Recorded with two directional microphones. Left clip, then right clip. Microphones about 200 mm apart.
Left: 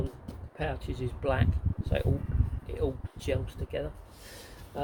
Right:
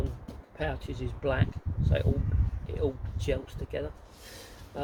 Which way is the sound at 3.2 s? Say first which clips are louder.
Right 1 dB; 10° left (ahead or behind).